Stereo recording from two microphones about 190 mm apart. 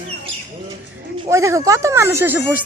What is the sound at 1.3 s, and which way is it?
Speech, 15° right (ahead or behind).